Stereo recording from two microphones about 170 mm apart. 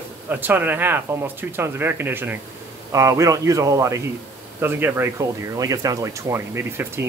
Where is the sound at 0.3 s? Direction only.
10° right (ahead or behind).